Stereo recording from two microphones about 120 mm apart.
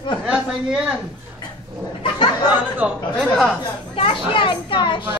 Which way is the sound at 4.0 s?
45° left (ahead or behind).